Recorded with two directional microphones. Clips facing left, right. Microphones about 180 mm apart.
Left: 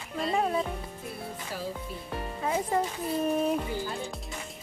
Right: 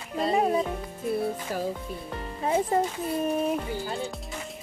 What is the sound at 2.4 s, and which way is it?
Speech, 30° right (ahead or behind).